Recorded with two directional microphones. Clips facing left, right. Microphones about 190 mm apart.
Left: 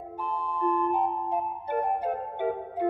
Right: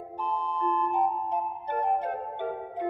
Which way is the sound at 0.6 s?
5° left (ahead or behind).